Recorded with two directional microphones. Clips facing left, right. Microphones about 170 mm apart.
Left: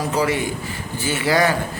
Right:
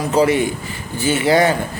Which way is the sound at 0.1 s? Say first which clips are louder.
Right 8 dB; 25° right (ahead or behind).